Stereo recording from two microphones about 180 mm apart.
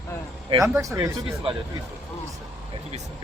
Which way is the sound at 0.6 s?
15° right (ahead or behind).